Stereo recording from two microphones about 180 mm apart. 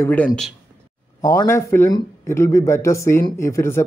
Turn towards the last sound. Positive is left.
turn(degrees=15)  # may be behind; listen again after turning